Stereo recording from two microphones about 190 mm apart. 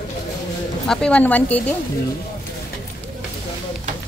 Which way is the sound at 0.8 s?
5° left (ahead or behind).